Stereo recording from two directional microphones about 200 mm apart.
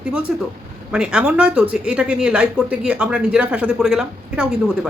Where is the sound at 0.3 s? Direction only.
5° right (ahead or behind).